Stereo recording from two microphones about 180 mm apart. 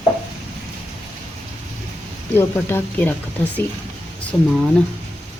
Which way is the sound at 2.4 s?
15° left (ahead or behind).